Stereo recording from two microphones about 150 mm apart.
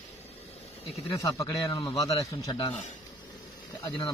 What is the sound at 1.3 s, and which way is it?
A man's voice, 20° left (ahead or behind).